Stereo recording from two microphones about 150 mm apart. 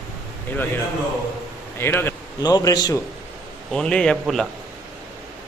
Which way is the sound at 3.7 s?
5° left (ahead or behind).